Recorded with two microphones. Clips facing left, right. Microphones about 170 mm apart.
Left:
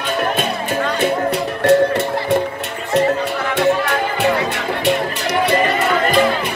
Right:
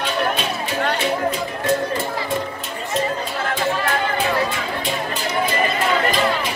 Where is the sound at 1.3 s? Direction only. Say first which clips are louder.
Left 7 dB; 75° left (ahead or behind).